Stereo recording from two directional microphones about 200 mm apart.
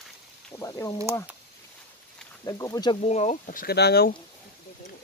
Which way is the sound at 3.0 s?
35° left (ahead or behind).